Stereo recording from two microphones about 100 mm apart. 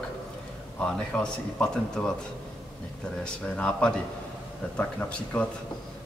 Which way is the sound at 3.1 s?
10° left (ahead or behind).